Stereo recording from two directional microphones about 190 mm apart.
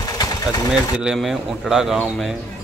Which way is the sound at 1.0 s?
Centre (ahead or behind).